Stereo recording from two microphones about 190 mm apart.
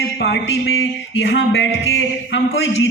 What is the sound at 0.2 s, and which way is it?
Speech, 65° left (ahead or behind).